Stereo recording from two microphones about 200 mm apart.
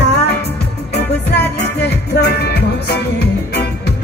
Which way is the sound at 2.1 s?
55° left (ahead or behind).